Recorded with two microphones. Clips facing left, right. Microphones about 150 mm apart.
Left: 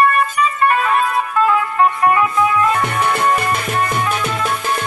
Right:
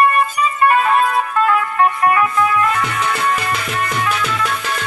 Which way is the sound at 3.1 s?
45° left (ahead or behind).